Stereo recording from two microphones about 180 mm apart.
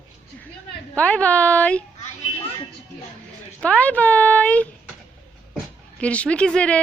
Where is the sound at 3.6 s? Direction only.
10° left (ahead or behind).